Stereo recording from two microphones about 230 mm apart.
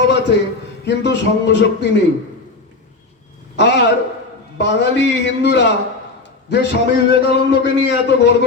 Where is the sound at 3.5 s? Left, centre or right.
Left.